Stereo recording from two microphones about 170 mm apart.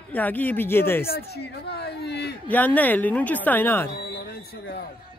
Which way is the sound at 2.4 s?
10° left (ahead or behind).